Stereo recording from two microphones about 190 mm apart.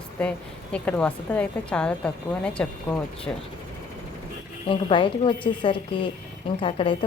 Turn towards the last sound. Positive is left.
turn(degrees=25)  # may be behind; listen again after turning